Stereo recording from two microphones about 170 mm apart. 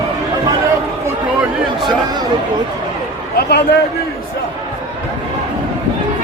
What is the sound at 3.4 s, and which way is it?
Speech, 70° left (ahead or behind).